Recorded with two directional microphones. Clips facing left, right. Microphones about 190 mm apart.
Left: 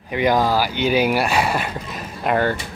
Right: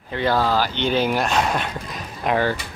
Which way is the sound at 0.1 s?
15° left (ahead or behind).